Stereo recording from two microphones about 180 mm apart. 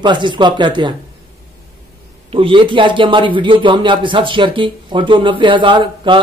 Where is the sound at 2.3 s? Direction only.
30° right (ahead or behind).